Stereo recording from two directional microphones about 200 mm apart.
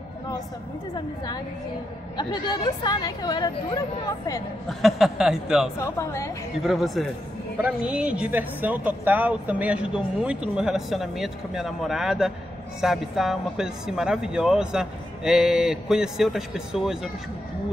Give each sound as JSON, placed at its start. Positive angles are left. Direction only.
{"t": 2.1, "sound": "speech", "side_deg": 20}
{"t": 4.6, "sound": "speech", "side_deg": 0}
{"t": 5.8, "sound": "speech", "side_deg": 15}
{"t": 6.6, "sound": "speech", "side_deg": 0}